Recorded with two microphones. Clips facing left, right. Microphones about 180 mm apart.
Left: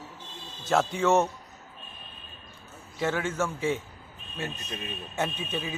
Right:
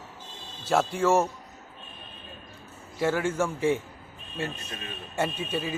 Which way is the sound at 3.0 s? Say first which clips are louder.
Right 3 dB; 10° right (ahead or behind).